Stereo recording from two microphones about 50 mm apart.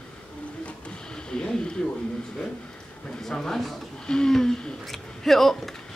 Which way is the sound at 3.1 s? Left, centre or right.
Centre.